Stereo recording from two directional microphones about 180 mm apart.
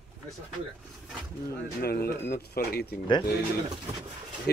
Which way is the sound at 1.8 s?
55° left (ahead or behind).